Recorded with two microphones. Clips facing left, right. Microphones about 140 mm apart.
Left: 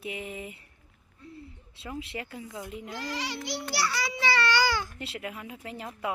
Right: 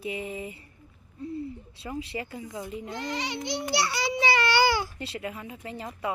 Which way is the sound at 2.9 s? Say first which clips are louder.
Right 2 dB; 20° right (ahead or behind).